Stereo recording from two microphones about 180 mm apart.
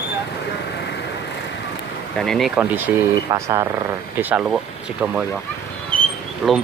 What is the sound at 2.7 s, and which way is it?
Speech, 15° right (ahead or behind).